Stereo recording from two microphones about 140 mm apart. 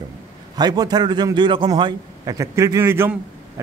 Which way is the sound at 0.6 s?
30° right (ahead or behind).